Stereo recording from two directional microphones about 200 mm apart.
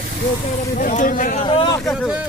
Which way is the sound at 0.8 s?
40° left (ahead or behind).